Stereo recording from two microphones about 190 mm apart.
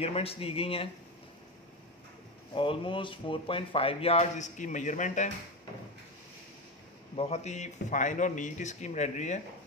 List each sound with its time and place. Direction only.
0.0 s speech: 30° left (ahead or behind)
2.5 s speech: 25° left (ahead or behind)
7.2 s speech: 35° left (ahead or behind)